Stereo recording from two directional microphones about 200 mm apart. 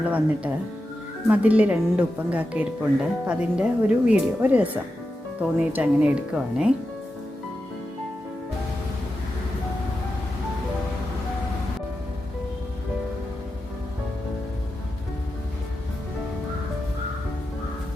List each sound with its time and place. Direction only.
0.0 s speech: 5° right (ahead or behind)